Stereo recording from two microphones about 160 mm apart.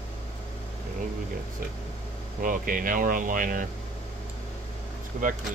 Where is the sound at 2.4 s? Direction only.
60° right (ahead or behind).